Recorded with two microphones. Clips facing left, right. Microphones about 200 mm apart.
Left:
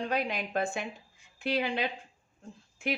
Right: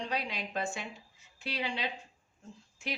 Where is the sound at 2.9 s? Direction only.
55° left (ahead or behind).